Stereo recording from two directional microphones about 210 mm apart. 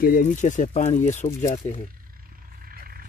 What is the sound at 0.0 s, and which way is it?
Speech, 40° left (ahead or behind).